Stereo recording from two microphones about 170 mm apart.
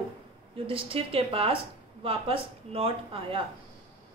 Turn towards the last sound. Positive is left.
turn(degrees=-35)  # may be behind; listen again after turning